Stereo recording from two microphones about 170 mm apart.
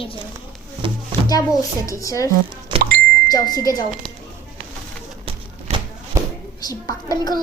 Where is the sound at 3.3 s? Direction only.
20° left (ahead or behind).